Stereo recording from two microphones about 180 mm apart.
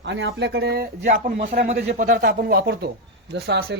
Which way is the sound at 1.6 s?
45° right (ahead or behind).